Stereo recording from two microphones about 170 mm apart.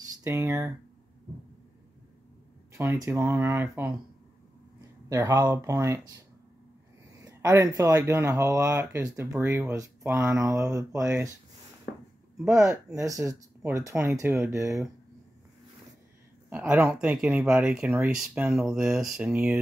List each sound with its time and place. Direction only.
0.0 s speech: 15° right (ahead or behind)
2.7 s speech: 20° right (ahead or behind)
5.1 s speech: 20° right (ahead or behind)
7.2 s speech: 20° right (ahead or behind)
11.0 s speech: 5° right (ahead or behind)
12.4 s speech: 15° right (ahead or behind)
16.4 s speech: 10° right (ahead or behind)